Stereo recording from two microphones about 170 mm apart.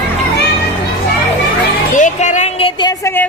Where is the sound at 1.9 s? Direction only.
45° left (ahead or behind).